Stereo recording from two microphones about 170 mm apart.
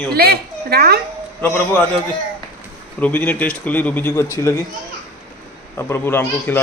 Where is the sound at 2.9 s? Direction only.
10° left (ahead or behind).